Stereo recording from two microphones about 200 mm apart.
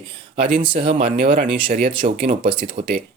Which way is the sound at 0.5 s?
25° right (ahead or behind).